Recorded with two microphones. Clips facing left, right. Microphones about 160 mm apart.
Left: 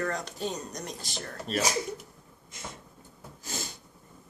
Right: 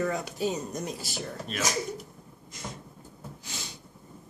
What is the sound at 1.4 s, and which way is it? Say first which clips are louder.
Speech: left 4 dB; 35° left (ahead or behind).